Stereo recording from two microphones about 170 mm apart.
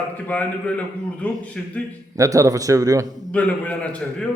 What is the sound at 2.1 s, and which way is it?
Speech, 20° right (ahead or behind).